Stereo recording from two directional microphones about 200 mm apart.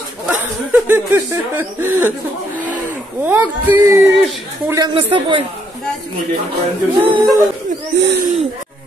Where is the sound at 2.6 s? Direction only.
10° right (ahead or behind).